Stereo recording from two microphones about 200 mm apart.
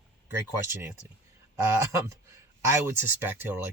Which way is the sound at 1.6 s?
15° right (ahead or behind).